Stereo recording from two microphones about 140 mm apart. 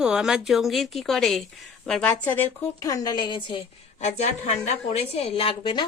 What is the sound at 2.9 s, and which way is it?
Speech, 25° left (ahead or behind).